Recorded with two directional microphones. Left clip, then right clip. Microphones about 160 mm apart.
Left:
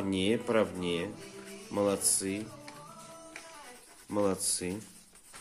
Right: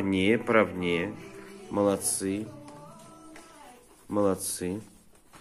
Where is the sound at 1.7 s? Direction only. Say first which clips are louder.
Right 4 dB; centre (ahead or behind).